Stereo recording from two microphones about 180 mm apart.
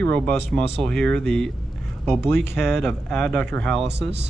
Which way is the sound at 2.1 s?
15° left (ahead or behind).